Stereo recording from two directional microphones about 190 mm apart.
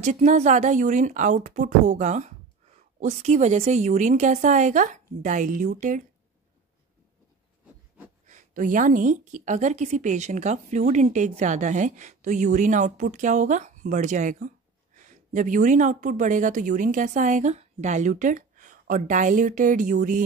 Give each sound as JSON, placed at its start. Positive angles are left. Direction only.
{"t": 0.0, "sound": "a woman's voice", "side_deg": -40}
{"t": 8.3, "sound": "a woman's voice", "side_deg": -40}